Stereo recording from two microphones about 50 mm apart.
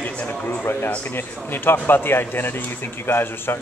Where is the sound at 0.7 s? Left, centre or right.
Left.